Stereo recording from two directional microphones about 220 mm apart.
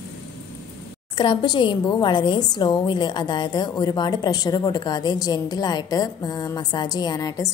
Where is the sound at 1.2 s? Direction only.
20° left (ahead or behind).